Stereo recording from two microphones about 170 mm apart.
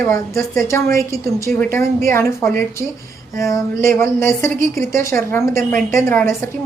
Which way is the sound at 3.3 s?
15° left (ahead or behind).